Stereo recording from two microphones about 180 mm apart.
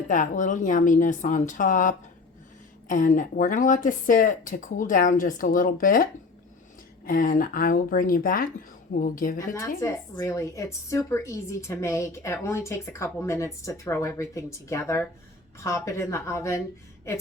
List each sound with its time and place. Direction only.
0.1 s speech: 45° left (ahead or behind)
9.4 s speech: 15° left (ahead or behind)